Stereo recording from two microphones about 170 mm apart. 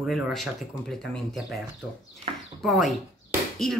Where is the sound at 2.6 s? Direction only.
Centre (ahead or behind).